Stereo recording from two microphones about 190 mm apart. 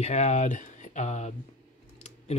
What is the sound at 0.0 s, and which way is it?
Speech, 35° left (ahead or behind).